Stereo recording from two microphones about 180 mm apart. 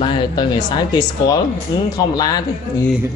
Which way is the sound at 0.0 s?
25° left (ahead or behind).